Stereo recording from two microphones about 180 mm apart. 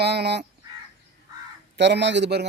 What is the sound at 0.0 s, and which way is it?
Speech, 65° right (ahead or behind).